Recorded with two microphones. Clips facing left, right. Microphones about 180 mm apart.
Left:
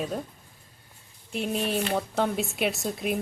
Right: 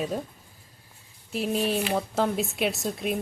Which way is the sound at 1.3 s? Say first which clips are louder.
Right 2 dB; centre (ahead or behind).